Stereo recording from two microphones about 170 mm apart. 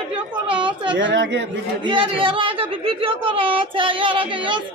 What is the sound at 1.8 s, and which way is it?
A woman's voice, 30° right (ahead or behind).